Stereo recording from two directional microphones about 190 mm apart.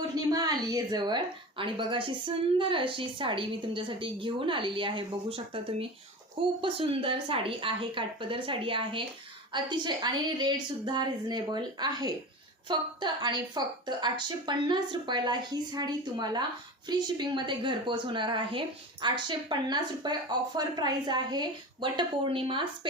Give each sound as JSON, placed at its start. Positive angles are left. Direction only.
{"t": 0.3, "sound": "a woman's voice", "side_deg": -20}
{"t": 6.4, "sound": "a woman's voice", "side_deg": -25}